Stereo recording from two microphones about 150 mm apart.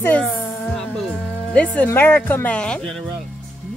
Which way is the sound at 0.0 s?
10° left (ahead or behind).